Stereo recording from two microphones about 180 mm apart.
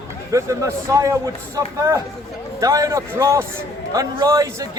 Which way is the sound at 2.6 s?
20° right (ahead or behind).